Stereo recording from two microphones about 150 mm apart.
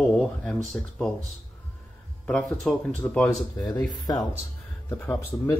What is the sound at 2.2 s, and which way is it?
Speech, 5° left (ahead or behind).